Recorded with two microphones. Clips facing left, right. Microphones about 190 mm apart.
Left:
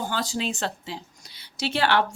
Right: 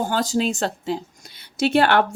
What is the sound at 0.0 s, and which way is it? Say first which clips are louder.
Speech: right 7 dB; 45° right (ahead or behind).